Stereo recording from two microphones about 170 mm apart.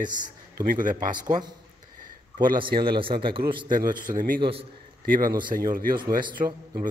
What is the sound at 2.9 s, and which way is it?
Speech, 30° right (ahead or behind).